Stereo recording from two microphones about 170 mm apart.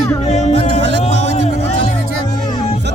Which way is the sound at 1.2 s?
40° left (ahead or behind).